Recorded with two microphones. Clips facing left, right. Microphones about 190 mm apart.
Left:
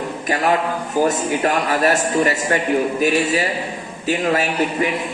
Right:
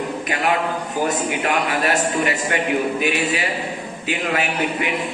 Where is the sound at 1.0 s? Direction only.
45° left (ahead or behind).